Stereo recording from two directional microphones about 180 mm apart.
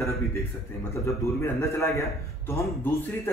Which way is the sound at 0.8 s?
15° left (ahead or behind).